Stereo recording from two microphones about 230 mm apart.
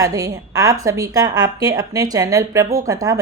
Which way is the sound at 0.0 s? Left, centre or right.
Centre.